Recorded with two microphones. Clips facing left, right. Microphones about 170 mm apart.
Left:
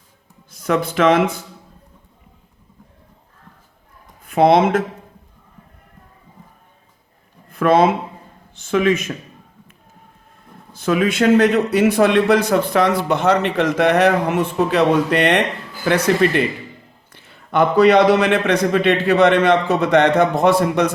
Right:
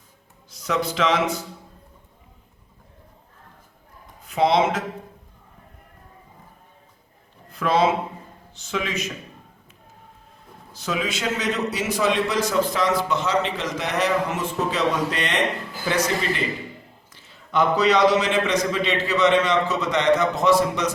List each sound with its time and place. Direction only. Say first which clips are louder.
0.5 s speech: left 6 dB; 55° left (ahead or behind)
4.2 s speech: left 6 dB; 55° left (ahead or behind)
7.5 s speech: left 6 dB; 55° left (ahead or behind)
10.8 s a man's voice: left 10 dB; 55° left (ahead or behind)